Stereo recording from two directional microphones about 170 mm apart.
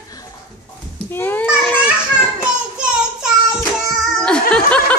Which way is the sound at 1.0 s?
15° left (ahead or behind).